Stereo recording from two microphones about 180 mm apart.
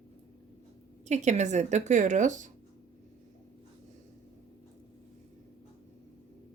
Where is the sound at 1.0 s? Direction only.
40° right (ahead or behind).